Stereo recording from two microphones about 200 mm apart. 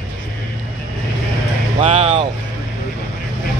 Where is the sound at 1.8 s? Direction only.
30° right (ahead or behind).